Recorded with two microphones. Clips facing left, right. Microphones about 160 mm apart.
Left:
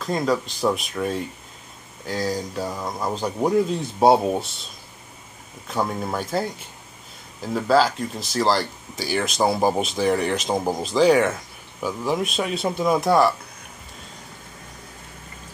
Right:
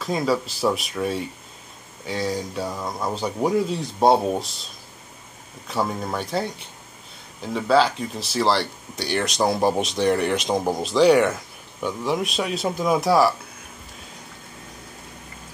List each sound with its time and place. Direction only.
0.0 s speech: centre (ahead or behind)
5.7 s speech: centre (ahead or behind)